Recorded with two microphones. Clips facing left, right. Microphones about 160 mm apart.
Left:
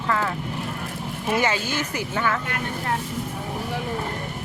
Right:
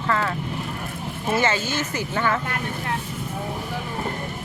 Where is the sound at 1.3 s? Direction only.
10° left (ahead or behind).